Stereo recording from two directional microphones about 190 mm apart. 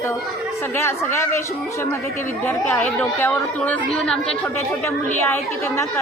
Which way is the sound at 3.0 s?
10° left (ahead or behind).